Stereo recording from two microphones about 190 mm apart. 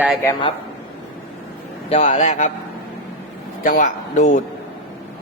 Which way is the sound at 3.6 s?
45° left (ahead or behind).